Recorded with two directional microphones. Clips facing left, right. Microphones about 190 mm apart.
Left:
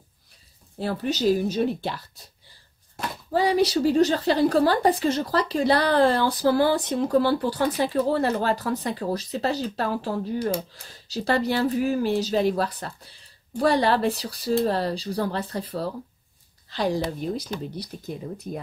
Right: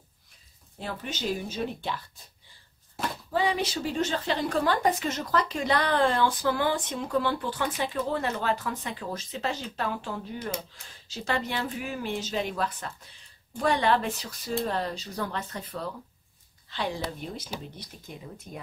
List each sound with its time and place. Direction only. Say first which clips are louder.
0.7 s a woman's voice: left 9 dB; 35° left (ahead or behind)
3.3 s a woman's voice: left 7 dB; 40° left (ahead or behind)